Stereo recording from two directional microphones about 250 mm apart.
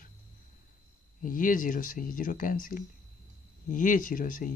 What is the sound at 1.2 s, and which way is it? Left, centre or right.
Speech, left.